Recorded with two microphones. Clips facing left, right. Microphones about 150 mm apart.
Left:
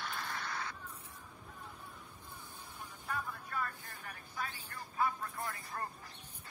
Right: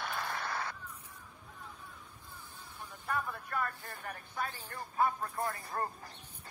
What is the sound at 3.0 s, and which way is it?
Vehicle, 60° right (ahead or behind).